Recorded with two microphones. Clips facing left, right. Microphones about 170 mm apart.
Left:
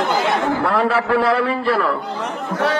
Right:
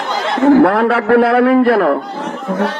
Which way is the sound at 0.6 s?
60° right (ahead or behind).